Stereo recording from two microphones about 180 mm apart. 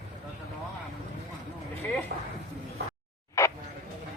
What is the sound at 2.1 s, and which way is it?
Speech, 50° right (ahead or behind).